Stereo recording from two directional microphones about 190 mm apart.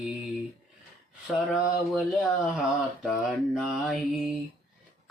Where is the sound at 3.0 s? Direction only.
Centre (ahead or behind).